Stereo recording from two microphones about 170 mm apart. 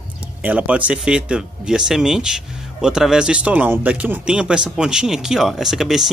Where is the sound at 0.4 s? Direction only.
10° right (ahead or behind).